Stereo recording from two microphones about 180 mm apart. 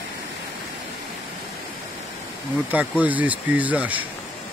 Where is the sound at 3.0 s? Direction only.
10° right (ahead or behind).